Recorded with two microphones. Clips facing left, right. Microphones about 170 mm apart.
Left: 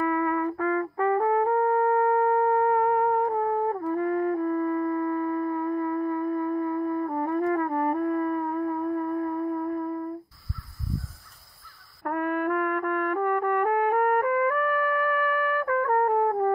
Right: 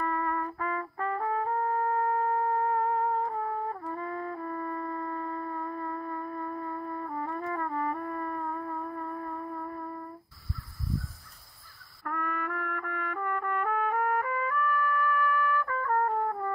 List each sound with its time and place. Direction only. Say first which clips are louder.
0.0 s music: left 6 dB; 60° left (ahead or behind)
12.0 s music: left 8 dB; 60° left (ahead or behind)